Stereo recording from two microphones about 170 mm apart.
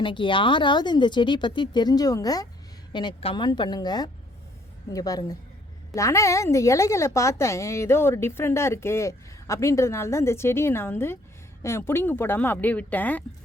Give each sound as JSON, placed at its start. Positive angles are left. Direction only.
{"t": 0.0, "sound": "a woman's voice", "side_deg": 30}